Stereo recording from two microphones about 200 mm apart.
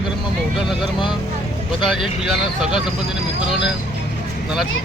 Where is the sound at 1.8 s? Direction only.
25° left (ahead or behind).